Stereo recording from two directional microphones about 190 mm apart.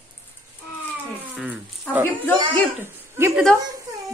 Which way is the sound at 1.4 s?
10° right (ahead or behind).